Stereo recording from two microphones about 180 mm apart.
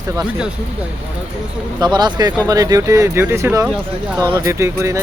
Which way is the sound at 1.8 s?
25° right (ahead or behind).